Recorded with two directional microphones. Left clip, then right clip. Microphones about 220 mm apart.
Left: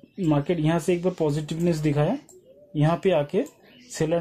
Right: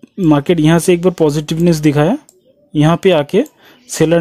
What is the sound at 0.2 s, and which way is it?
Speech, 50° right (ahead or behind).